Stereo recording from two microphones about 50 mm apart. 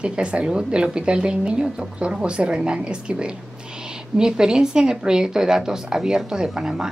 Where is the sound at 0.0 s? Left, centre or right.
Right.